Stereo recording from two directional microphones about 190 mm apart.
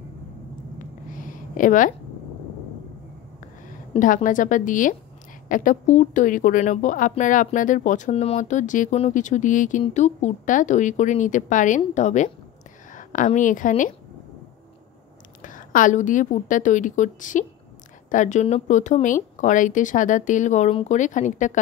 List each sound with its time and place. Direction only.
0.7 s a sound: 45° left (ahead or behind)
3.9 s a woman's voice: 45° left (ahead or behind)
15.4 s speech: 45° left (ahead or behind)